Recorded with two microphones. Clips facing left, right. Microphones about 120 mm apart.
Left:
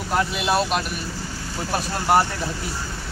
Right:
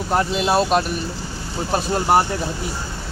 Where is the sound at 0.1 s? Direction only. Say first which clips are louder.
Right 3 dB; 35° right (ahead or behind).